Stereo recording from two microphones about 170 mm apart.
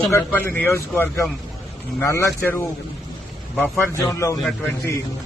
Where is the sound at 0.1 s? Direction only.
10° left (ahead or behind).